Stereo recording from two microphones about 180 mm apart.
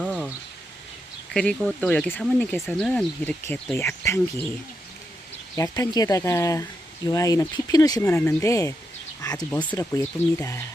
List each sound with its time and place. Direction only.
0.0 s a sound: centre (ahead or behind)
1.3 s speech: 5° left (ahead or behind)
5.5 s speech: 20° left (ahead or behind)
8.0 s speech: 10° left (ahead or behind)